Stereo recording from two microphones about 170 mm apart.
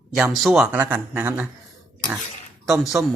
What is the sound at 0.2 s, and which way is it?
Speech, centre (ahead or behind).